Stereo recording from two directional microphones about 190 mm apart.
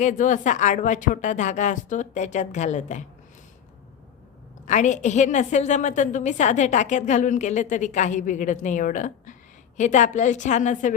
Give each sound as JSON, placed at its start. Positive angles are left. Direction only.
{"t": 0.0, "sound": "a woman's voice", "side_deg": 40}
{"t": 4.6, "sound": "a woman's voice", "side_deg": 40}